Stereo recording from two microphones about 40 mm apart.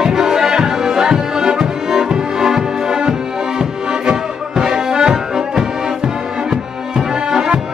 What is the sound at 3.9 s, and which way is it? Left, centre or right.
Music, centre.